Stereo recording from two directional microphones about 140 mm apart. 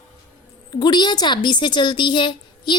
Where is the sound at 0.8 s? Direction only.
30° left (ahead or behind).